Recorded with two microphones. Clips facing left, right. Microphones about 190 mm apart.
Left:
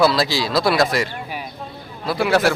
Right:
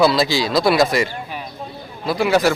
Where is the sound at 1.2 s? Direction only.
10° left (ahead or behind).